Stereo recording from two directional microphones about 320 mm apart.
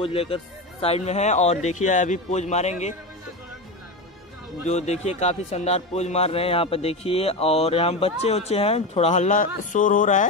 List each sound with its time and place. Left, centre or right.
0.0 s a man's voice: centre
4.6 s a man's voice: left